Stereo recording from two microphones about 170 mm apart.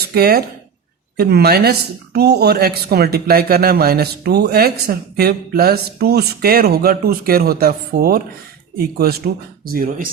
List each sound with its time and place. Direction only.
0.1 s a man's voice: 65° right (ahead or behind)